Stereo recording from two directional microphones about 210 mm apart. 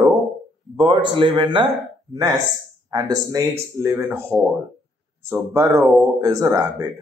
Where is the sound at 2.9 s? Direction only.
15° right (ahead or behind).